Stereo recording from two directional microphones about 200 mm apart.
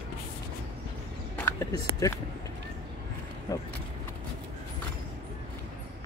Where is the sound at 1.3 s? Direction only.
10° left (ahead or behind).